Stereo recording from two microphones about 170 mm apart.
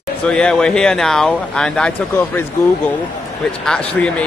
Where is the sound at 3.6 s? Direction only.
5° left (ahead or behind).